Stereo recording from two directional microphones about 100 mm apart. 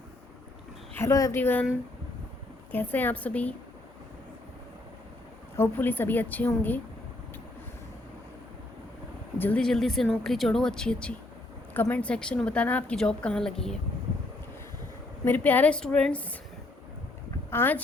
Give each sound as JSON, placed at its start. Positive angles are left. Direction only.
{"t": 0.9, "sound": "a woman's voice", "side_deg": 30}
{"t": 1.4, "sound": "a woman's voice", "side_deg": 20}
{"t": 2.7, "sound": "speech", "side_deg": 20}
{"t": 5.5, "sound": "a woman's voice", "side_deg": 20}
{"t": 9.4, "sound": "speech", "side_deg": 15}
{"t": 9.6, "sound": "speech", "side_deg": 5}
{"t": 15.2, "sound": "speech", "side_deg": 20}
{"t": 17.5, "sound": "speech", "side_deg": 20}